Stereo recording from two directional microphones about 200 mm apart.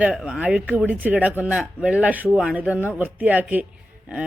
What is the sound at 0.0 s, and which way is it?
Speech, 5° right (ahead or behind).